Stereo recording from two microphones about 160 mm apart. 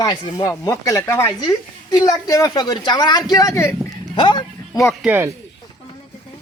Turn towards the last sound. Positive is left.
turn(degrees=-15)  # may be behind; listen again after turning